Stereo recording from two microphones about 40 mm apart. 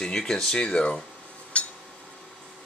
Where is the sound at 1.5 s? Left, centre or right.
Left.